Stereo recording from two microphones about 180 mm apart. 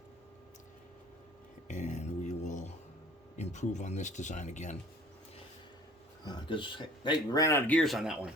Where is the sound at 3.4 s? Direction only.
40° left (ahead or behind).